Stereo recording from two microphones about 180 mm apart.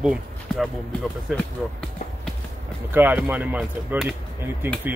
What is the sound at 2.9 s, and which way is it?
Speech, 10° right (ahead or behind).